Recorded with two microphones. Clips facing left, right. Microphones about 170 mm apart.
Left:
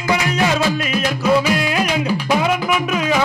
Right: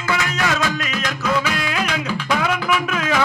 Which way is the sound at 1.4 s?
10° left (ahead or behind).